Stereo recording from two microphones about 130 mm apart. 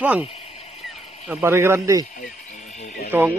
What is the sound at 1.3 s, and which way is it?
Speech, 20° right (ahead or behind).